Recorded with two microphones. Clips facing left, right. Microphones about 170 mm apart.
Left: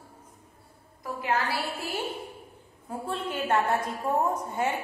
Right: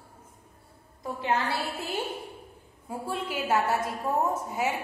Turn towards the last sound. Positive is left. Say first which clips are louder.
# even
turn(degrees=-5)  # may be behind; listen again after turning